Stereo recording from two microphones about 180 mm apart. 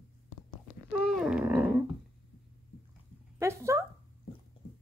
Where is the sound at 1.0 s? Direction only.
Centre (ahead or behind).